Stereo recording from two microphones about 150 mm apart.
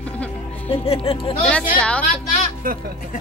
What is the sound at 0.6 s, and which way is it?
Music, 40° left (ahead or behind).